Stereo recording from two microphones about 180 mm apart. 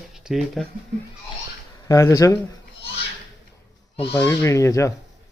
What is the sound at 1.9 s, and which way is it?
Speech, 15° left (ahead or behind).